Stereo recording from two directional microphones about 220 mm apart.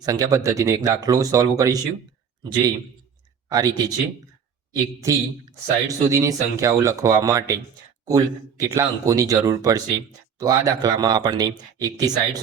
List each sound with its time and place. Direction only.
0.0 s speech: 15° right (ahead or behind)